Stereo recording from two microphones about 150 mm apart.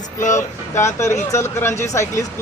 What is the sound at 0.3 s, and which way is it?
A man's voice, 20° left (ahead or behind).